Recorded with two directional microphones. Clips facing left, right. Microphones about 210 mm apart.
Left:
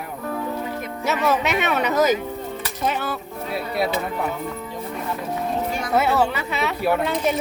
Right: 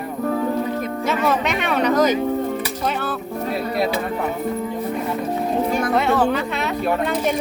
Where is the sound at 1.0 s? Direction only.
5° left (ahead or behind).